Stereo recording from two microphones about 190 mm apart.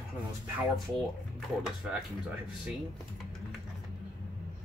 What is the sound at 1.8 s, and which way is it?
Speech, 5° right (ahead or behind).